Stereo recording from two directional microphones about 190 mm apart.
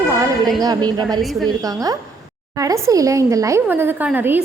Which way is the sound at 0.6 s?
20° right (ahead or behind).